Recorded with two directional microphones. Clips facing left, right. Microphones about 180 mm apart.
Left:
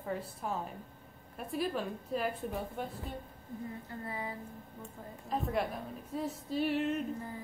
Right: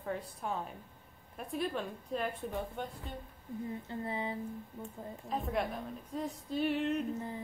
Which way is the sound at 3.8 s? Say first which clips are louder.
Right 3 dB; 25° right (ahead or behind).